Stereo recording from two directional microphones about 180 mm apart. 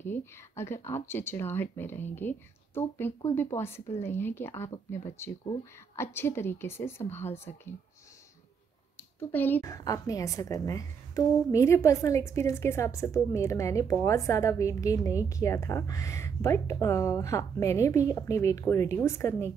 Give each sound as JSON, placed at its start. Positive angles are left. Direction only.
{"t": 0.0, "sound": "a woman's voice", "side_deg": 15}
{"t": 9.3, "sound": "a woman's voice", "side_deg": 10}